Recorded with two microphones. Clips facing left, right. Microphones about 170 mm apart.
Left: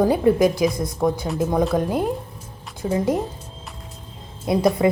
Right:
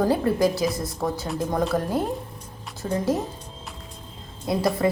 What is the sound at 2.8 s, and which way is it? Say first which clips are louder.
Speech: left 3 dB; 15° left (ahead or behind).